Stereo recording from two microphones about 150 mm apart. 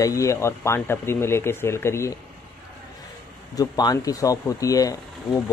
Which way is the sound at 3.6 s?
25° left (ahead or behind).